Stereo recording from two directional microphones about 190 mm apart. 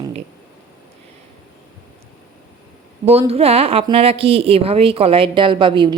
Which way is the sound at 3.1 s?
30° right (ahead or behind).